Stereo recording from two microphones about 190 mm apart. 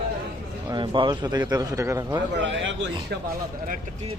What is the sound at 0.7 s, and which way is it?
Speech, 25° right (ahead or behind).